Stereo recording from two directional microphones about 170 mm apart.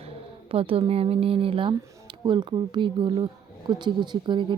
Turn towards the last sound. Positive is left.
turn(degrees=-25)  # may be behind; listen again after turning